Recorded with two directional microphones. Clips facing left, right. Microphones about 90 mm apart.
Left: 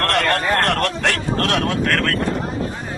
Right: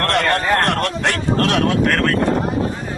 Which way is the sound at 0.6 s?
20° right (ahead or behind).